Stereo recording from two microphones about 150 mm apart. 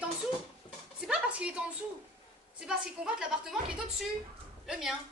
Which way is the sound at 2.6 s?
5° right (ahead or behind).